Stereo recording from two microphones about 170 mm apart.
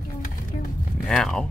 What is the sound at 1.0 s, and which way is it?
Speech, 5° left (ahead or behind).